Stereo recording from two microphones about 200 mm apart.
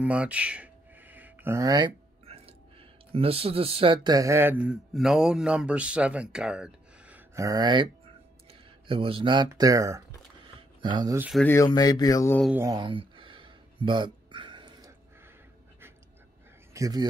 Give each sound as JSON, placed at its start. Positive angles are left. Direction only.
{"t": 0.0, "sound": "speech", "side_deg": -5}
{"t": 11.1, "sound": "speech", "side_deg": -5}
{"t": 11.4, "sound": "speech", "side_deg": 15}
{"t": 12.5, "sound": "a sound", "side_deg": -15}
{"t": 16.7, "sound": "speech", "side_deg": -15}